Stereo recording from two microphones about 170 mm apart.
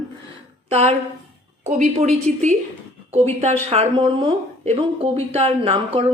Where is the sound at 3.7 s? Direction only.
35° right (ahead or behind).